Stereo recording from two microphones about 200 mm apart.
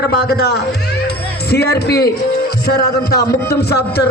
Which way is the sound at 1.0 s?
55° left (ahead or behind).